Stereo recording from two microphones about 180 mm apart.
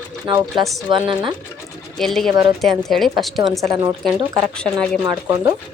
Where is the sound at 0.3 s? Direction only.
25° right (ahead or behind).